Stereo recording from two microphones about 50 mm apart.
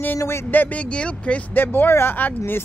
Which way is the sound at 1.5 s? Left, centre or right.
Left.